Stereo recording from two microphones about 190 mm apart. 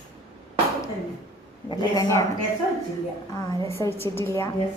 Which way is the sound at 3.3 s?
15° left (ahead or behind).